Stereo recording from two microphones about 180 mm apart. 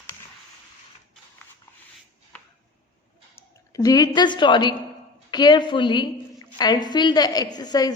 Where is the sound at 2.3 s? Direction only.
10° left (ahead or behind).